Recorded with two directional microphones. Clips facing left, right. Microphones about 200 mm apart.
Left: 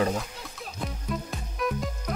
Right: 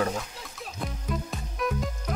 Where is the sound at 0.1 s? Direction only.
Centre (ahead or behind).